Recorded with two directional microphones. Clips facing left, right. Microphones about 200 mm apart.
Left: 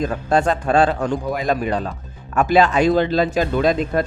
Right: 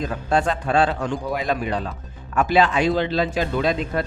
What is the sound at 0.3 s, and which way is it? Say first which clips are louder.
A man's voice: left 3 dB; 45° left (ahead or behind).